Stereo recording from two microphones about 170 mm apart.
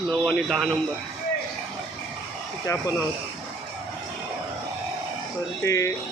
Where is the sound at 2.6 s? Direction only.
20° left (ahead or behind).